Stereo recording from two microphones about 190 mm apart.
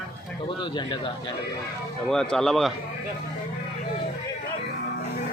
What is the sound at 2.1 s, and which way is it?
Speech, 5° left (ahead or behind).